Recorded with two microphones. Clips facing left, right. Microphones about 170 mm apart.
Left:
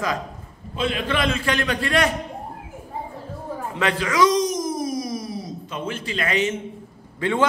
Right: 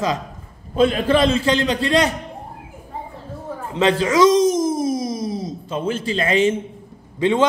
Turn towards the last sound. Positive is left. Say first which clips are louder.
# right 5 dB
turn(degrees=-20)  # may be behind; listen again after turning